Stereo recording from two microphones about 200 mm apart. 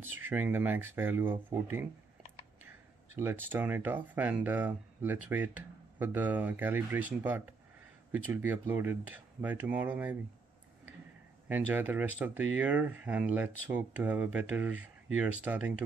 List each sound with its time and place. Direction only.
0.0 s speech: 10° right (ahead or behind)
3.2 s speech: 10° right (ahead or behind)
8.1 s speech: 10° right (ahead or behind)
11.4 s speech: 10° right (ahead or behind)